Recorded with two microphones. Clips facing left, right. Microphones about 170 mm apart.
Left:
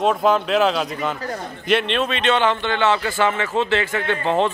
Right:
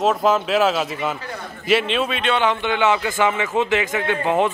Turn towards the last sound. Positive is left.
turn(degrees=-10)  # may be behind; listen again after turning